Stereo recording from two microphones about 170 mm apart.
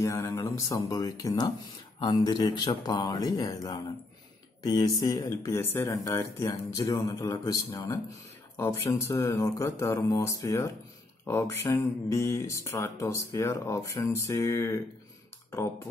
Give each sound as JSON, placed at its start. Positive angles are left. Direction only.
{"t": 0.0, "sound": "speech", "side_deg": 15}